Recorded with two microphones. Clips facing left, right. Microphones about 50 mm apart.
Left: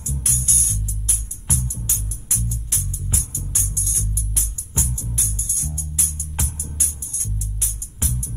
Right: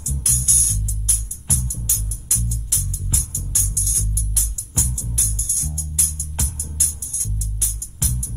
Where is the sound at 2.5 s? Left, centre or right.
Left.